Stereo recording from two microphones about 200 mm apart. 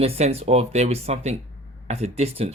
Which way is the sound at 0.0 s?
30° right (ahead or behind).